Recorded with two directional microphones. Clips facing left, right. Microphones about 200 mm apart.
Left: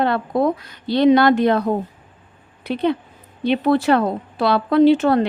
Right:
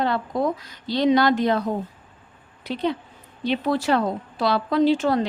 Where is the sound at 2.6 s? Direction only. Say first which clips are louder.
Left 5 dB; 60° left (ahead or behind).